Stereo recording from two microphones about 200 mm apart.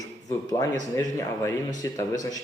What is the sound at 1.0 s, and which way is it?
Speech, 15° left (ahead or behind).